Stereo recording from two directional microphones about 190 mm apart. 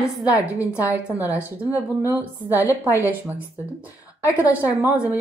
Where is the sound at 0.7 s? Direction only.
10° right (ahead or behind).